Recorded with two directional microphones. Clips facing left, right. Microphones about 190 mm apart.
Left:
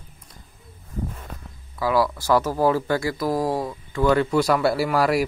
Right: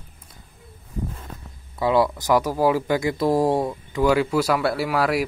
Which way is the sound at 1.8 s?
25° right (ahead or behind).